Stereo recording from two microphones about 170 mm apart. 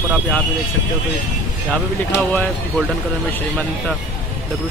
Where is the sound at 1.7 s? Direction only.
10° left (ahead or behind).